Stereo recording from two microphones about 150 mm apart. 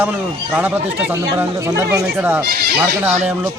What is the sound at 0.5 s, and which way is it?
Speech, 10° right (ahead or behind).